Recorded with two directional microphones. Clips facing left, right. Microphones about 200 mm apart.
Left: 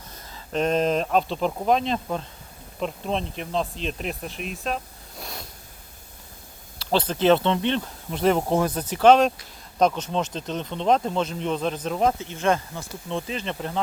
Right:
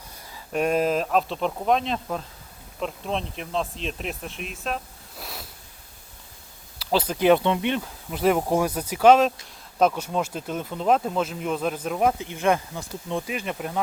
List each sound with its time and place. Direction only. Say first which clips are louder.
0.1 s speech: even; 10° right (ahead or behind)
6.7 s speech: even; 10° right (ahead or behind)